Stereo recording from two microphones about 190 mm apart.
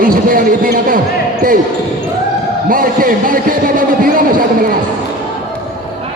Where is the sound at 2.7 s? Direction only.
50° right (ahead or behind).